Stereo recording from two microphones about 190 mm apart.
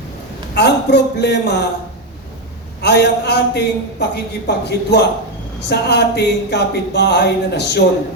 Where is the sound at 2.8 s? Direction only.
60° left (ahead or behind).